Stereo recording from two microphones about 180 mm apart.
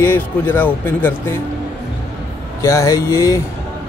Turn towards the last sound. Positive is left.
turn(degrees=15)  # may be behind; listen again after turning